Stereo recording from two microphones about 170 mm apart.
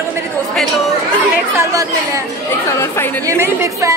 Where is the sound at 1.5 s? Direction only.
20° right (ahead or behind).